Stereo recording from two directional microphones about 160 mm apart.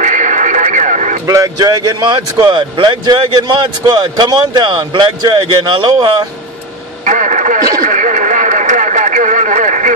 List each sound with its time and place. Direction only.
0.0 s radio: 50° right (ahead or behind)
1.2 s speech: 20° right (ahead or behind)
7.1 s speech: 50° right (ahead or behind)
7.8 s radio: 50° right (ahead or behind)